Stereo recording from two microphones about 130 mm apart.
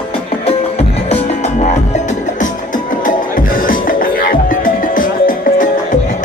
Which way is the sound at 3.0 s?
90° left.